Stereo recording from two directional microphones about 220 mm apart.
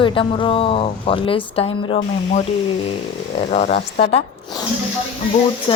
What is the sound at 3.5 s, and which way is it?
Speech, 30° left (ahead or behind).